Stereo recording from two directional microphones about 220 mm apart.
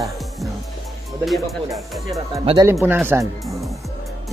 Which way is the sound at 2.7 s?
10° right (ahead or behind).